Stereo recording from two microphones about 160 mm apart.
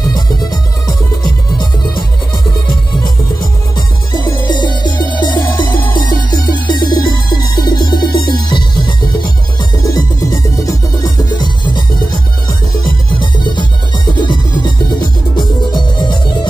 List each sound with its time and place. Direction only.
0.1 s music: 25° left (ahead or behind)
3.7 s music: 25° left (ahead or behind)